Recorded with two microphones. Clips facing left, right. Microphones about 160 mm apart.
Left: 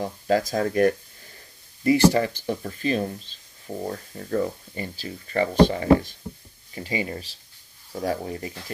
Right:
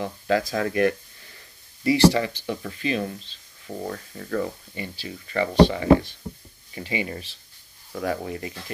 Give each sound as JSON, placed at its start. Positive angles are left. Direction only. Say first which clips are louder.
{"t": 0.0, "sound": "speech", "louder": "left 1 dB", "side_deg": 40}